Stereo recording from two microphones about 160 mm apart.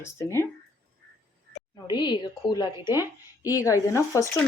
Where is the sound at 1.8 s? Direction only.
25° left (ahead or behind).